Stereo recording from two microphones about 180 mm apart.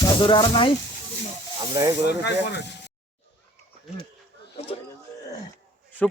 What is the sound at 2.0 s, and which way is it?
Speech, 70° left (ahead or behind).